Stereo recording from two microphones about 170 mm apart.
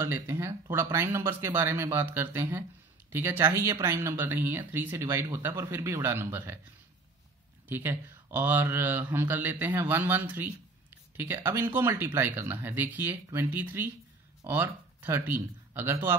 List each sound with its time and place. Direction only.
0.0 s speech: 15° right (ahead or behind)
7.6 s speech: 10° right (ahead or behind)